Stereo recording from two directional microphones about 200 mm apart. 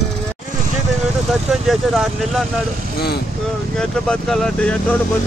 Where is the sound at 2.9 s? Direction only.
55° left (ahead or behind).